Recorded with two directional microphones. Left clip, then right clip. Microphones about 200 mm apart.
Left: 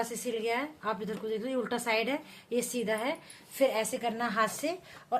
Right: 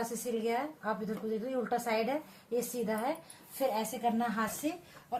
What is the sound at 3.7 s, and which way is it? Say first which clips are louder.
Speech: left 1 dB; 50° left (ahead or behind).